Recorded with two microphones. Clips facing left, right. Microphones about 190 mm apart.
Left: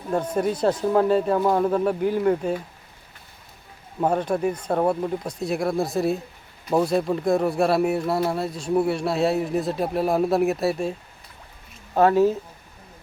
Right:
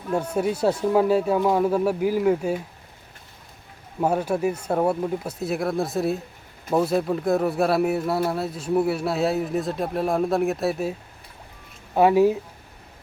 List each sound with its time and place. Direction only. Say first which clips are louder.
0.3 s speech: even; 10° right (ahead or behind)
4.0 s speech: even; 5° right (ahead or behind)
11.9 s speech: right 1 dB; 10° right (ahead or behind)